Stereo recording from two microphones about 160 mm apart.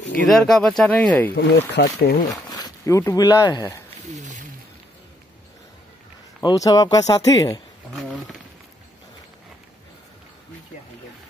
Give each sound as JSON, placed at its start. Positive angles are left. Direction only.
{"t": 0.3, "sound": "speech", "side_deg": 5}
{"t": 1.3, "sound": "speech", "side_deg": 85}
{"t": 2.5, "sound": "speech", "side_deg": 20}
{"t": 4.0, "sound": "a sound", "side_deg": -45}
{"t": 6.4, "sound": "speech", "side_deg": 25}
{"t": 7.9, "sound": "speech", "side_deg": 0}